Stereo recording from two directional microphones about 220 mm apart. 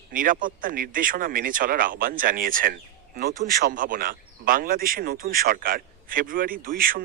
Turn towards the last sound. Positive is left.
turn(degrees=-40)  # may be behind; listen again after turning